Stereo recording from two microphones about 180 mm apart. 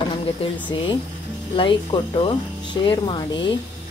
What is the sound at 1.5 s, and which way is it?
Speech, 25° left (ahead or behind).